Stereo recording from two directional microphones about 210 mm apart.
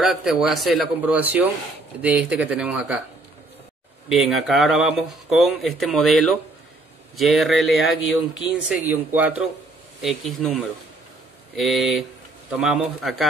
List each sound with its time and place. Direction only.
0.0 s speech: centre (ahead or behind)
4.1 s speech: centre (ahead or behind)